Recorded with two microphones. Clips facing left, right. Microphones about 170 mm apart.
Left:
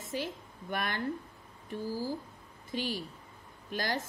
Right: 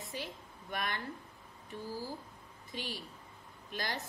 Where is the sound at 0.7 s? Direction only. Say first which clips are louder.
Left 4 dB; 45° left (ahead or behind).